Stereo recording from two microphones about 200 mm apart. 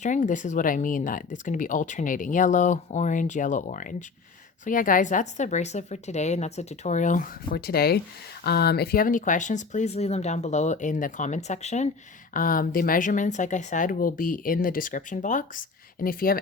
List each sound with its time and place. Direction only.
0.0 s speech: 40° left (ahead or behind)